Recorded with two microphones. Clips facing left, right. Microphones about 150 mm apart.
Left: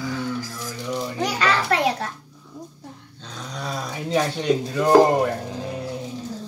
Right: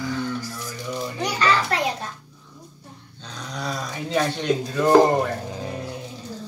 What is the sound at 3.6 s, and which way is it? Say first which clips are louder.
Speech: even; 5° left (ahead or behind).